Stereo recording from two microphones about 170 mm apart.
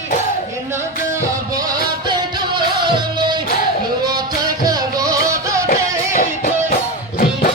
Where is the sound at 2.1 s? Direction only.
25° right (ahead or behind).